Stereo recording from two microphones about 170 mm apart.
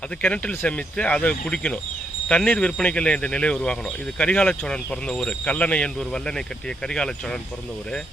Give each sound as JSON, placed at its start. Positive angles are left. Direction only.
{"t": 0.2, "sound": "speech", "side_deg": 5}